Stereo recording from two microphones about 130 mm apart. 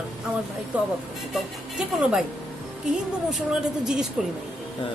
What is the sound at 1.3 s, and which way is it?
Speech, 5° right (ahead or behind).